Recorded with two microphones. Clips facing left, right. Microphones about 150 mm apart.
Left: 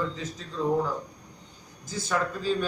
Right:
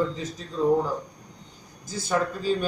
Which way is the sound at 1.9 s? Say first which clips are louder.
Right 3 dB; 10° right (ahead or behind).